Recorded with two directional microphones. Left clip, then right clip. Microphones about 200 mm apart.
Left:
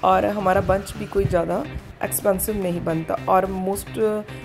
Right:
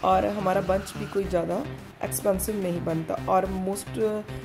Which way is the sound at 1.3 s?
15° left (ahead or behind).